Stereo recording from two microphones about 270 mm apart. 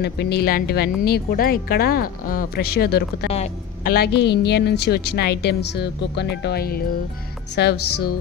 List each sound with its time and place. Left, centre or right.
0.0 s speech: left
3.3 s speech: left
3.9 s speech: left